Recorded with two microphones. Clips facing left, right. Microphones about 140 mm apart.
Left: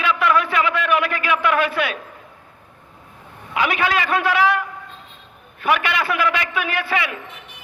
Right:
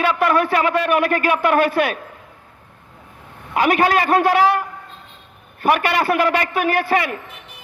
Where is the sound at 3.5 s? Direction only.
45° right (ahead or behind).